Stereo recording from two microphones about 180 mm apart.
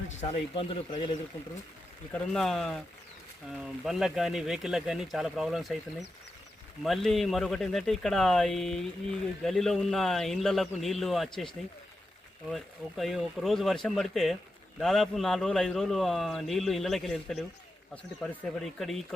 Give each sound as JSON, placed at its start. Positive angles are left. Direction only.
{"t": 0.2, "sound": "speech", "side_deg": 30}
{"t": 2.1, "sound": "a man's voice", "side_deg": 0}
{"t": 6.8, "sound": "a man's voice", "side_deg": 0}
{"t": 12.5, "sound": "a man's voice", "side_deg": 0}